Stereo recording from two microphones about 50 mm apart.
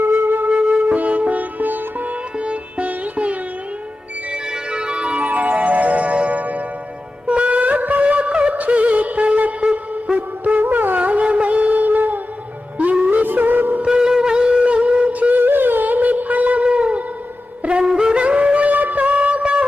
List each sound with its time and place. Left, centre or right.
0.0 s flute: right
0.5 s sitar: right
2.4 s music: right
13.2 s music: right
13.8 s wind instrument: centre
17.6 s music: right